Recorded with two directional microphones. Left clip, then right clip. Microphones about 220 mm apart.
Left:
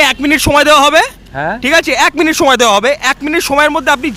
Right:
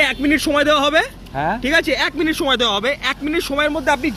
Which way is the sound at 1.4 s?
20° left (ahead or behind).